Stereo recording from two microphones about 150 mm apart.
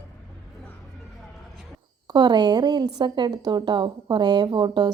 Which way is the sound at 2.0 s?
30° right (ahead or behind).